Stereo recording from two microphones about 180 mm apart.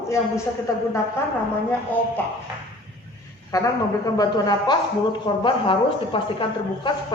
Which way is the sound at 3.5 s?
20° left (ahead or behind).